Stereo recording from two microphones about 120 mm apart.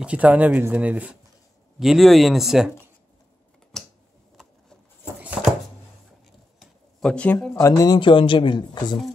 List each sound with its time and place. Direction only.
0.0 s speech: 10° right (ahead or behind)
1.8 s speech: centre (ahead or behind)
6.6 s a sound: 5° left (ahead or behind)
7.5 s speech: 30° left (ahead or behind)